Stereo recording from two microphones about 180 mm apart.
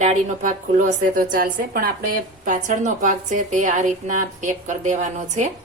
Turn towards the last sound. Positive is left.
turn(degrees=-40)  # may be behind; listen again after turning